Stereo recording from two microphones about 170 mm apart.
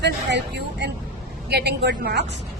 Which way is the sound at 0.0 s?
90° right.